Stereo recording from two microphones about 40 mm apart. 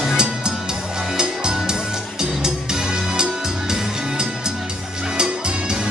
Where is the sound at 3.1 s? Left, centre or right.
Centre.